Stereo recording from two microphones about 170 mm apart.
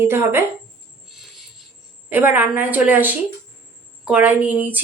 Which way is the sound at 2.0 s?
10° right (ahead or behind).